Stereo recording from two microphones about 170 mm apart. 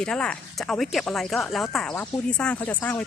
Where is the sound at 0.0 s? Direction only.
5° left (ahead or behind).